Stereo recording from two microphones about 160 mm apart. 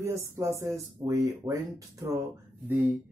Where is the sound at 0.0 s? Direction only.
20° right (ahead or behind).